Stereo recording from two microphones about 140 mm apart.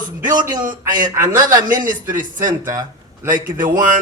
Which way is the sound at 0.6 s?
70° right (ahead or behind).